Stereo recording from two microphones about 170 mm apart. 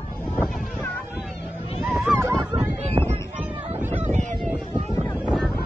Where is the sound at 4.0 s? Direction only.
45° right (ahead or behind).